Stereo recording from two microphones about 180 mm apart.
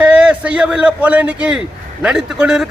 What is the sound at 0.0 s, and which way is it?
Speech, 5° right (ahead or behind).